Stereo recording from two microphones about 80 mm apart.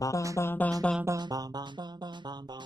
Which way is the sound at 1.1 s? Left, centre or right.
Right.